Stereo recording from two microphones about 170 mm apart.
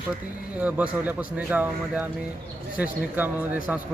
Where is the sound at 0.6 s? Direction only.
10° right (ahead or behind).